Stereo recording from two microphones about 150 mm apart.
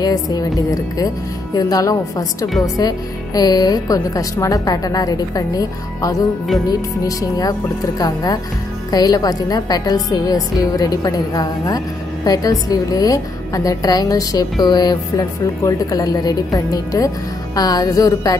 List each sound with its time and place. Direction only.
0.0 s a woman's voice: 25° left (ahead or behind)